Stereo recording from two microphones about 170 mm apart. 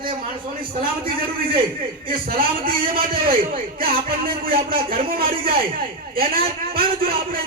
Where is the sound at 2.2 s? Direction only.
55° right (ahead or behind).